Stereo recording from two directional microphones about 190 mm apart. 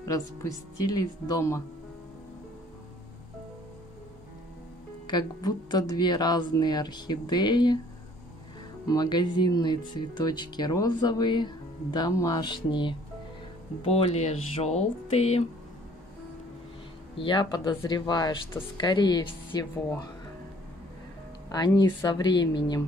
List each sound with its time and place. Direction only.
0.1 s speech: 20° left (ahead or behind)
5.0 s speech: 25° left (ahead or behind)
8.8 s speech: 20° left (ahead or behind)
17.2 s speech: 25° left (ahead or behind)
21.5 s speech: 20° left (ahead or behind)